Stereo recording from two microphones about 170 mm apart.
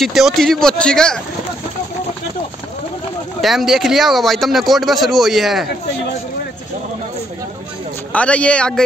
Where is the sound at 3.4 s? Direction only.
Centre (ahead or behind).